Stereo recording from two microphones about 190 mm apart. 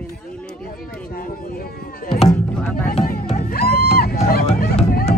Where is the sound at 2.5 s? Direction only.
5° left (ahead or behind).